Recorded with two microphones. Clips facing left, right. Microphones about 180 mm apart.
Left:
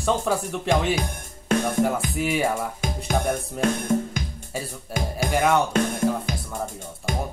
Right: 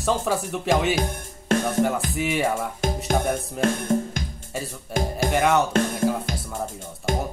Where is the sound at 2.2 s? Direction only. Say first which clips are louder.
Even; centre (ahead or behind).